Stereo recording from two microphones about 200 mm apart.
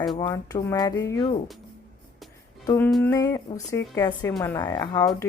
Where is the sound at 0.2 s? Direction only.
20° left (ahead or behind).